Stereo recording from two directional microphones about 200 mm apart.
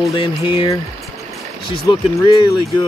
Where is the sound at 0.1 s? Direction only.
25° left (ahead or behind).